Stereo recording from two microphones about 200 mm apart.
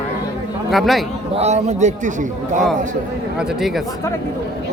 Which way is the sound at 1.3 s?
35° right (ahead or behind).